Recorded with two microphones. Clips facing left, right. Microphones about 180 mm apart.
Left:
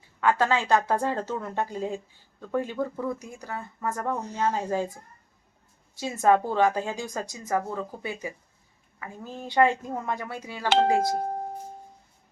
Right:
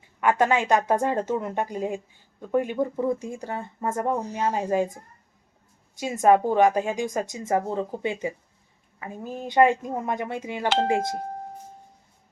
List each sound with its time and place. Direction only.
0.2 s a woman's voice: 20° right (ahead or behind)
6.0 s a woman's voice: 15° right (ahead or behind)